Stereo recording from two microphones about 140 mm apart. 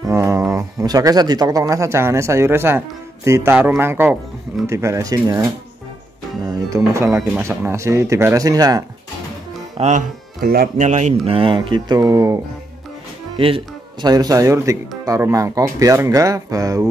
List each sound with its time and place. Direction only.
0.1 s speech: 20° right (ahead or behind)
9.8 s speech: 55° right (ahead or behind)
10.4 s speech: 90° right; by 12.4 s 25° right (ahead or behind)
14.0 s speech: 25° right (ahead or behind)